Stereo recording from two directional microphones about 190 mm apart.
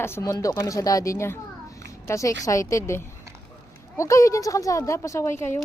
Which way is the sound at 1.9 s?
15° left (ahead or behind).